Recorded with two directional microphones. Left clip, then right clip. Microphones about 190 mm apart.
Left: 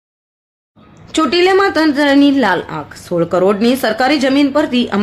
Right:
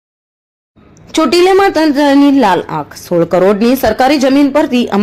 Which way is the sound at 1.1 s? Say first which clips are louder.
Right 3 dB; 25° right (ahead or behind).